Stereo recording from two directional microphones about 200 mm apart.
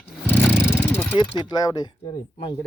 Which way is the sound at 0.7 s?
10° left (ahead or behind).